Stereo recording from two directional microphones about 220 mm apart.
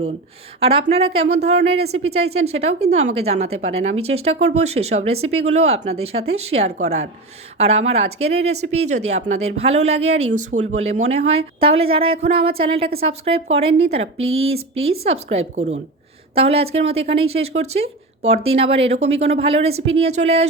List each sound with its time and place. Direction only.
0.6 s speech: 25° right (ahead or behind)